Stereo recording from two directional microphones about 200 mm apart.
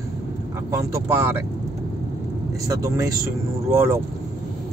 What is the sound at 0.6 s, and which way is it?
Speech, 15° right (ahead or behind).